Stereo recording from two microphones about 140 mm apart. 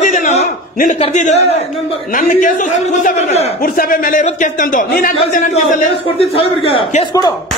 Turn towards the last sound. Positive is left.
turn(degrees=40)  # may be behind; listen again after turning